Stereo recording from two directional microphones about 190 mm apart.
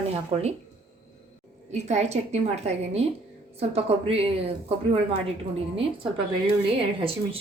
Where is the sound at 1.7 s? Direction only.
35° right (ahead or behind).